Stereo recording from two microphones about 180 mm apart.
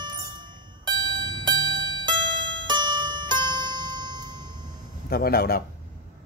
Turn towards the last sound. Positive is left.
turn(degrees=60)  # may be behind; listen again after turning